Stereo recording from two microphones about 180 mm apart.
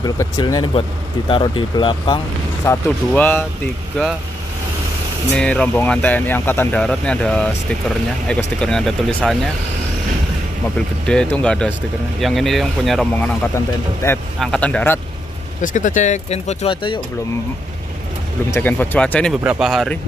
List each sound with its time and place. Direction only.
0.0 s speech: 20° left (ahead or behind)
5.3 s speech: 5° left (ahead or behind)
11.1 s speech: 5° left (ahead or behind)
14.0 s speech: 15° left (ahead or behind)
14.4 s speech: 5° left (ahead or behind)
15.6 s speech: 45° left (ahead or behind); by 17.0 s 30° left (ahead or behind)
18.5 s speech: 10° left (ahead or behind)